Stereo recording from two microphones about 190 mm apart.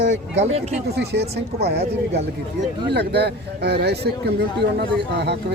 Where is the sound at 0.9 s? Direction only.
60° right (ahead or behind).